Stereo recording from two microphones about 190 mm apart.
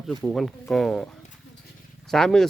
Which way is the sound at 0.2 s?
Centre (ahead or behind).